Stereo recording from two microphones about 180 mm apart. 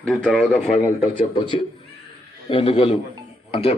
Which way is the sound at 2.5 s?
30° left (ahead or behind).